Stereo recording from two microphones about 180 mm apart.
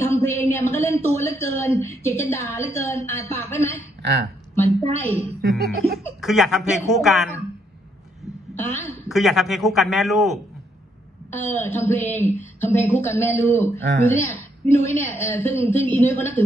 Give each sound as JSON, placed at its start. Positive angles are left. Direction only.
{"t": 0.0, "sound": "a woman's voice", "side_deg": 10}
{"t": 4.0, "sound": "speech", "side_deg": -60}
{"t": 4.8, "sound": "a woman's voice", "side_deg": -35}
{"t": 5.4, "sound": "music", "side_deg": -65}
{"t": 6.2, "sound": "a man's voice", "side_deg": 0}
{"t": 8.5, "sound": "a woman's voice", "side_deg": 10}
{"t": 9.1, "sound": "a man's voice", "side_deg": 0}
{"t": 11.2, "sound": "a woman's voice", "side_deg": 10}